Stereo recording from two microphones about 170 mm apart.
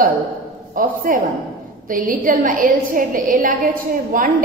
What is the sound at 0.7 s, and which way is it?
A woman's voice, 55° right (ahead or behind).